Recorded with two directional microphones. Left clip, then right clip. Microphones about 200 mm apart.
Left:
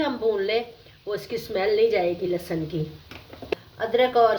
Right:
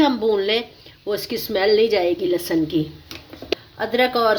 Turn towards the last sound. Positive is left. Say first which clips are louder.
# right 1 dB
turn(degrees=-50)  # may be behind; listen again after turning